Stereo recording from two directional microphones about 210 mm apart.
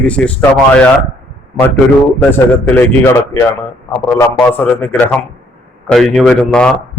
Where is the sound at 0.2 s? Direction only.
5° left (ahead or behind).